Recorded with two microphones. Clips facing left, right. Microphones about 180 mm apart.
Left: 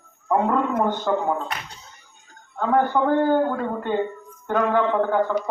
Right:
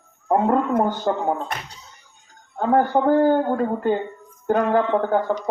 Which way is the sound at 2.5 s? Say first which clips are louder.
Right 2 dB; 40° right (ahead or behind).